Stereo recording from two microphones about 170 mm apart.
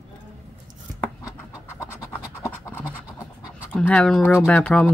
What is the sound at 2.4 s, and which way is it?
Scratch, 15° left (ahead or behind).